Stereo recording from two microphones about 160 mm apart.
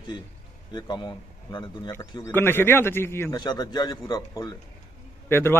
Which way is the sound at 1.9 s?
15° left (ahead or behind).